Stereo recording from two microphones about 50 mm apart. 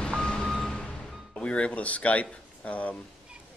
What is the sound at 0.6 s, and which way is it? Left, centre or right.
Music, centre.